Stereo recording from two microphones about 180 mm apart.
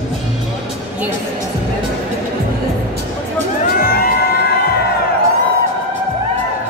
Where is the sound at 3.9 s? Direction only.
55° left (ahead or behind).